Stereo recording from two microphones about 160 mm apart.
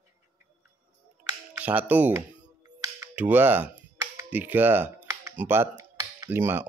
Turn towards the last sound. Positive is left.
turn(degrees=-15)  # may be behind; listen again after turning